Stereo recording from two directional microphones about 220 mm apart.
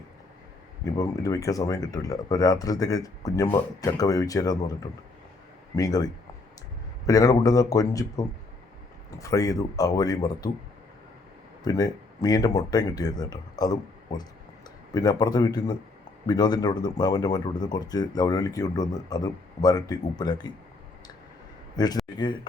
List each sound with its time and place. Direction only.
0.9 s speech: 15° left (ahead or behind)
7.1 s speech: 15° left (ahead or behind)
11.6 s speech: 15° left (ahead or behind)
21.8 s speech: 20° left (ahead or behind)